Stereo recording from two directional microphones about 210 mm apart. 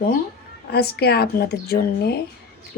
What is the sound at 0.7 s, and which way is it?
A woman's voice, 50° left (ahead or behind).